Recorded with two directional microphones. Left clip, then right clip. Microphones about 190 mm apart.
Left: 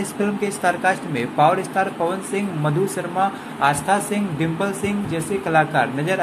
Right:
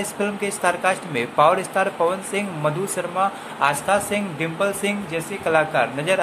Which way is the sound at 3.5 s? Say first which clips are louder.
Left 1 dB; 10° right (ahead or behind).